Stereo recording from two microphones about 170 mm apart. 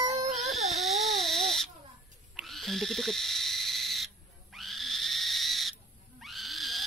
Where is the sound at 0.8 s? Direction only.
Centre (ahead or behind).